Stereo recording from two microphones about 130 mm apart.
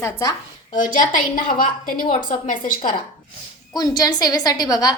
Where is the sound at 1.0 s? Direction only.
90° left.